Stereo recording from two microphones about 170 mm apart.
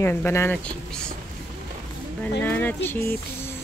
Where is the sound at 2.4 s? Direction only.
10° left (ahead or behind).